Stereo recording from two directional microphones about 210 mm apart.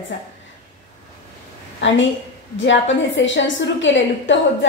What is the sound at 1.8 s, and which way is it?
A woman's voice, 60° left (ahead or behind).